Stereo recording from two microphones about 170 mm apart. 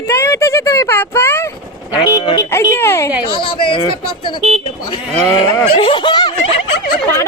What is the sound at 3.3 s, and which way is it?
Speech, 30° left (ahead or behind).